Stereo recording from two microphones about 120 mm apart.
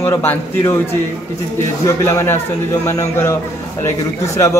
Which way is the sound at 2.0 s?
20° left (ahead or behind).